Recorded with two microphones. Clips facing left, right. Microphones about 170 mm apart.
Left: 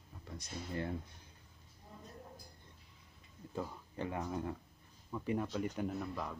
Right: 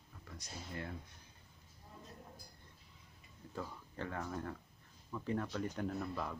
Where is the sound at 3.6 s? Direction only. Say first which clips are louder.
Left 3 dB; 15° left (ahead or behind).